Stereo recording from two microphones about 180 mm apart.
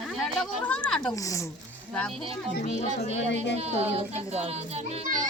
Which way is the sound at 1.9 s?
5° left (ahead or behind).